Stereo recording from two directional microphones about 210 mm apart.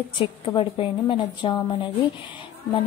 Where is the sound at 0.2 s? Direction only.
25° left (ahead or behind).